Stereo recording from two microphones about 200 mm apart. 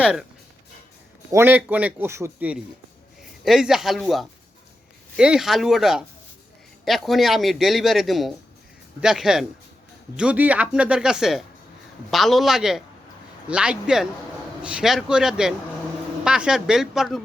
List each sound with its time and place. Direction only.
1.3 s a man's voice: 10° right (ahead or behind)